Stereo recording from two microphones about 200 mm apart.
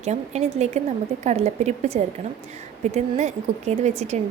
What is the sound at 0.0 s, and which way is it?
A woman's voice, 35° right (ahead or behind).